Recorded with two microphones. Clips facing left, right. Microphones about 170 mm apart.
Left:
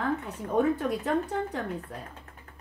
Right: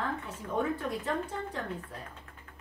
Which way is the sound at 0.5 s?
65° left (ahead or behind).